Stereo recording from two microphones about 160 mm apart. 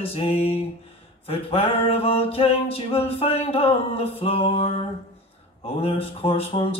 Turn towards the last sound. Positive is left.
turn(degrees=35)  # may be behind; listen again after turning